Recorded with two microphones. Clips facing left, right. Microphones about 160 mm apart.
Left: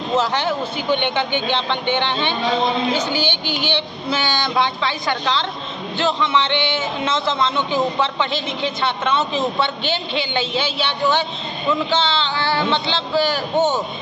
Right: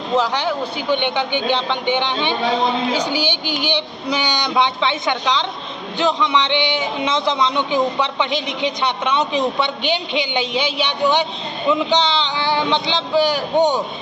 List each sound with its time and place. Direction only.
0.1 s a man's voice: 15° right (ahead or behind)